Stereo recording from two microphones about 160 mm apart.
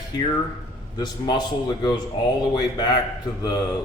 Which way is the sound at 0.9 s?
25° left (ahead or behind).